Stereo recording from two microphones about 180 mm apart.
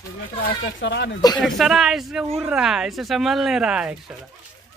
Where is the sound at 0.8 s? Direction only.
75° left (ahead or behind).